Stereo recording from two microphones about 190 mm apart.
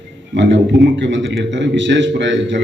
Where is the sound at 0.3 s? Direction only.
70° right (ahead or behind).